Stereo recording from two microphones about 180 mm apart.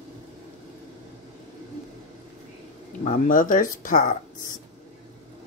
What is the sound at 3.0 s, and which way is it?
Speech, 50° left (ahead or behind).